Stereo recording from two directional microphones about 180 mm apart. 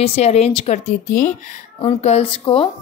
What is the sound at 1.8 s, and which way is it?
Speech, 30° left (ahead or behind).